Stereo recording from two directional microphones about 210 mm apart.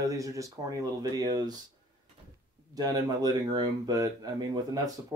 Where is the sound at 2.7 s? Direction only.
20° right (ahead or behind).